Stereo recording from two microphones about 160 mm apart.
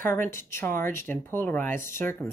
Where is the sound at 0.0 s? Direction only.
15° left (ahead or behind).